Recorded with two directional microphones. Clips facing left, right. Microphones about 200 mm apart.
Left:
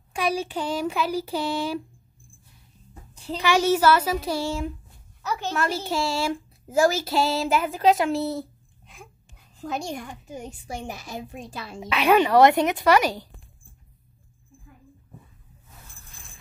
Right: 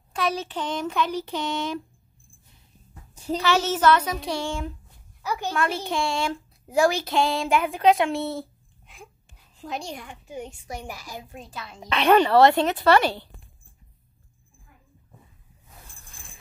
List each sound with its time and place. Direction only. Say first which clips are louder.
0.1 s speech: left 1 dB; 10° left (ahead or behind)
3.3 s speech: left 3 dB; 15° left (ahead or behind)
5.2 s a woman's voice: even; 10° right (ahead or behind)
5.9 s speech: left 1 dB; 5° left (ahead or behind)
9.6 s a woman's voice: left 3 dB; 45° left (ahead or behind); by 11.8 s 30° left (ahead or behind)
11.8 s speech: right 1 dB; 5° left (ahead or behind)